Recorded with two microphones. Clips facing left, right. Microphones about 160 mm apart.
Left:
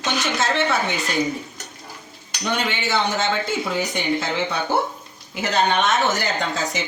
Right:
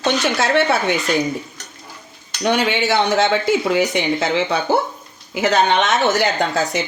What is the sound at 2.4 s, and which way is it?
Cutlery, 70° right (ahead or behind).